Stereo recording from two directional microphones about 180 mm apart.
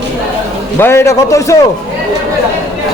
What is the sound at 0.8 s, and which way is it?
Speech, 15° left (ahead or behind).